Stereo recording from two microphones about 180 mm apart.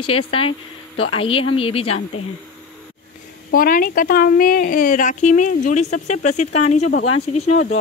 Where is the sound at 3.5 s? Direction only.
50° left (ahead or behind).